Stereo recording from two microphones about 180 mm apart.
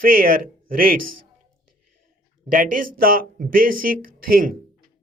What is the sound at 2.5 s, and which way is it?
Speech, 50° right (ahead or behind).